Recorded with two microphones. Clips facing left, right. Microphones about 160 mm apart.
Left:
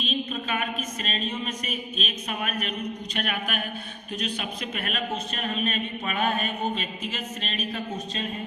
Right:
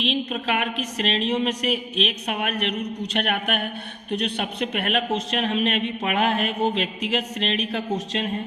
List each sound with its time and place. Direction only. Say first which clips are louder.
0.0 s a man's voice: right 5 dB; 75° right (ahead or behind)